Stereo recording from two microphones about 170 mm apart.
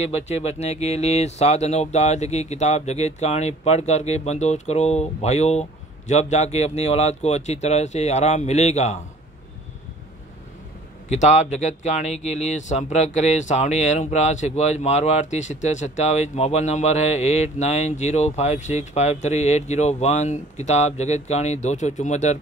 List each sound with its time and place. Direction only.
0.0 s speech: 40° left (ahead or behind)
11.1 s speech: 45° left (ahead or behind)